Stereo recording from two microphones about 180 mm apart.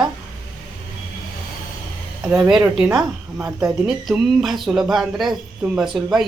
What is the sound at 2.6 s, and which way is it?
A woman's voice, 15° right (ahead or behind).